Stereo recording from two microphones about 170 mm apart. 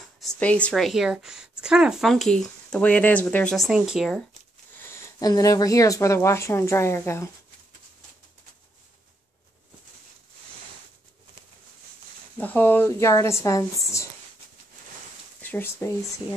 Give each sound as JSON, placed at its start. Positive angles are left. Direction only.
{"t": 0.2, "sound": "speech", "side_deg": 10}
{"t": 4.7, "sound": "speech", "side_deg": 15}
{"t": 12.4, "sound": "speech", "side_deg": 10}
{"t": 15.4, "sound": "speech", "side_deg": 10}